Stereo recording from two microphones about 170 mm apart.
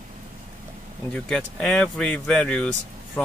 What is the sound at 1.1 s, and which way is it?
Speech, 5° left (ahead or behind).